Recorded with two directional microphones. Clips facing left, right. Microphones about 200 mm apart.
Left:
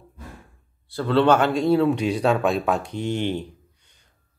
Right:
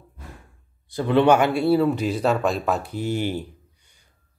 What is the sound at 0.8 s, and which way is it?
Speech, 15° right (ahead or behind).